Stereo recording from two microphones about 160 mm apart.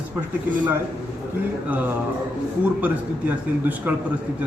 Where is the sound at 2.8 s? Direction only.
10° right (ahead or behind).